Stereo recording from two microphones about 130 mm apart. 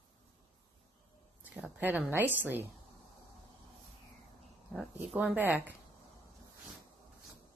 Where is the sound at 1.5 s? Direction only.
10° right (ahead or behind).